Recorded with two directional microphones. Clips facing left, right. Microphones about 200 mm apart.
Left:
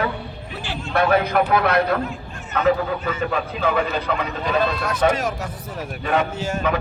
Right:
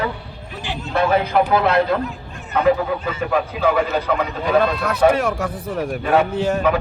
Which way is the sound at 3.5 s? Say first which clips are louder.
Right 3 dB; 10° right (ahead or behind).